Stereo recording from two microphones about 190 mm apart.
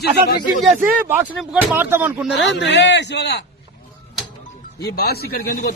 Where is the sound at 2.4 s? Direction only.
65° left (ahead or behind).